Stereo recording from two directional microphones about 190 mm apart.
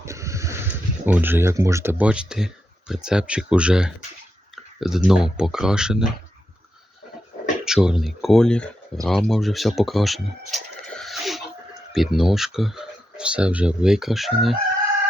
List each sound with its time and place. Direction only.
0.0 s speech: 15° right (ahead or behind)
4.5 s clicking: centre (ahead or behind)
5.0 s speech: 5° right (ahead or behind)
7.6 s speech: 5° right (ahead or behind)